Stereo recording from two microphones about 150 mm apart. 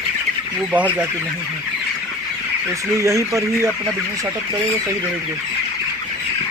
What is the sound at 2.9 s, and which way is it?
Chicken, 20° right (ahead or behind).